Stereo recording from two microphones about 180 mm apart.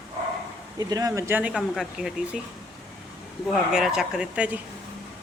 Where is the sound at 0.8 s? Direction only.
20° right (ahead or behind); by 2.4 s centre (ahead or behind).